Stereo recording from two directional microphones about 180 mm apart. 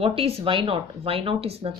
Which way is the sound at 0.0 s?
30° right (ahead or behind).